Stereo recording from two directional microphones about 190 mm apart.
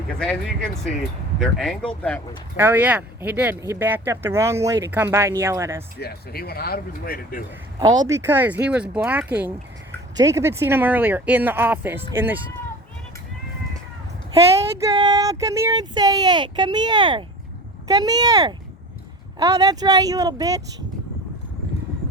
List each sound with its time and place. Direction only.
0.2 s speech: 5° left (ahead or behind)
2.6 s speech: 10° right (ahead or behind)
6.0 s speech: 55° left (ahead or behind)
7.8 s speech: 20° right (ahead or behind)
14.8 s speech: 20° right (ahead or behind)